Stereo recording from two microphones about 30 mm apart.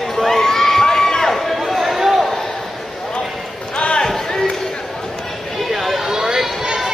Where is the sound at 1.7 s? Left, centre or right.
Centre.